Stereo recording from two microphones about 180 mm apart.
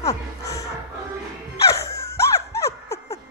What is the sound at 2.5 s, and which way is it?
Snicker, 15° left (ahead or behind).